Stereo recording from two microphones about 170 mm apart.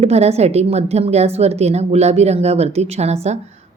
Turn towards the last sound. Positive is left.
turn(degrees=-40)  # may be behind; listen again after turning